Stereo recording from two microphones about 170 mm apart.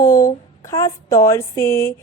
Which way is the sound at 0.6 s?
20° left (ahead or behind).